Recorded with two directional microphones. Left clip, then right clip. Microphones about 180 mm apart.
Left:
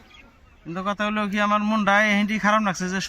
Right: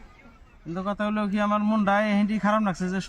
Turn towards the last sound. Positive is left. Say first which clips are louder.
# left 4 dB
turn(degrees=10)  # may be behind; listen again after turning